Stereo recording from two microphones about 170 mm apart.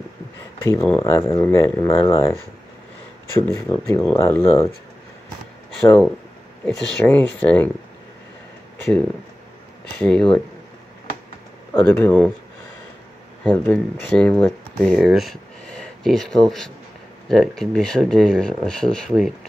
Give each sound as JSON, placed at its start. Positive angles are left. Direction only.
{"t": 0.7, "sound": "speech", "side_deg": 15}
{"t": 5.9, "sound": "speech", "side_deg": 5}
{"t": 9.9, "sound": "speech", "side_deg": 5}
{"t": 11.7, "sound": "speech", "side_deg": 5}
{"t": 13.4, "sound": "speech", "side_deg": 5}